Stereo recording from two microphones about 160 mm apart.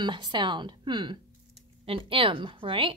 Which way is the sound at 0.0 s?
30° right (ahead or behind).